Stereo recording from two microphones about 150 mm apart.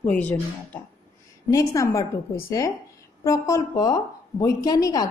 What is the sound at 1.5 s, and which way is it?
A woman's voice, 20° left (ahead or behind).